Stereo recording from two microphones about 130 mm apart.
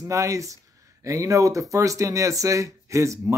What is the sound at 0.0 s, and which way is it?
Speech, 25° right (ahead or behind).